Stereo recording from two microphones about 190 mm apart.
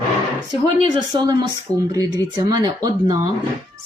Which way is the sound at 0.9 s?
20° right (ahead or behind).